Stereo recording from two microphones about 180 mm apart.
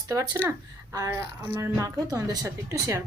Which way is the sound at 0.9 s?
15° right (ahead or behind).